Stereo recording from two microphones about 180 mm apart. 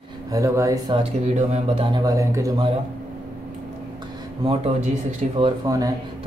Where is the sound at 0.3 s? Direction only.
15° right (ahead or behind).